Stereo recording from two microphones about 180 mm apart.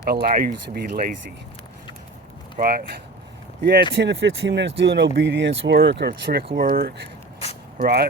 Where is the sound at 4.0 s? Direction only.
80° right.